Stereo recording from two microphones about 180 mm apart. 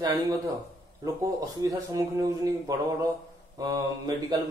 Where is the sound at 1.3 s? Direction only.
20° right (ahead or behind).